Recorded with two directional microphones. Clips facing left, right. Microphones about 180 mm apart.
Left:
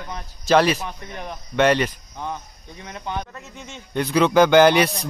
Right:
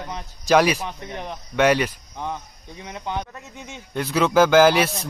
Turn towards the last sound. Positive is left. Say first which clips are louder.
# left 1 dB
turn(degrees=0)  # may be behind; listen again after turning